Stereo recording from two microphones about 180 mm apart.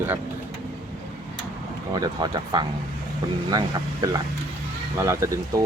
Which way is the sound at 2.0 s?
20° right (ahead or behind).